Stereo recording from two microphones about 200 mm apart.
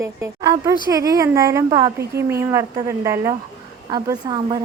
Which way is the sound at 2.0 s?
55° right (ahead or behind).